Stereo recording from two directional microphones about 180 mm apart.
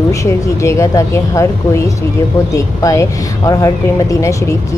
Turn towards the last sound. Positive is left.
turn(degrees=15)  # may be behind; listen again after turning